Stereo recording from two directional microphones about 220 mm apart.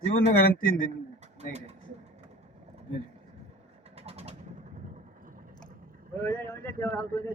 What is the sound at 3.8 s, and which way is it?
Vehicle, 30° right (ahead or behind).